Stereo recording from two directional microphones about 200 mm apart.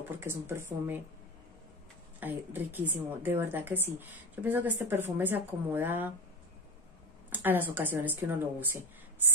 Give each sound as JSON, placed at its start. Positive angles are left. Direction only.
{"t": 0.0, "sound": "a woman's voice", "side_deg": -10}
{"t": 2.1, "sound": "a woman's voice", "side_deg": -10}
{"t": 7.2, "sound": "speech", "side_deg": -10}